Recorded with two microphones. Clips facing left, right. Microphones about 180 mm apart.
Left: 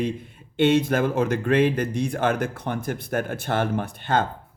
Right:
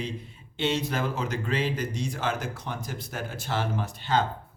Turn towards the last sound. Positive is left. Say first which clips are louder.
# left 3 dB
turn(degrees=55)  # may be behind; listen again after turning